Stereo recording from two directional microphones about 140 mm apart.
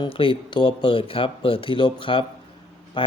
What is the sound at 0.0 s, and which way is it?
Speech, 40° left (ahead or behind).